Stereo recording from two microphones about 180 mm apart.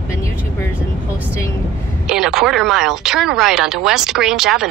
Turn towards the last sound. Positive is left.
turn(degrees=-5)  # may be behind; listen again after turning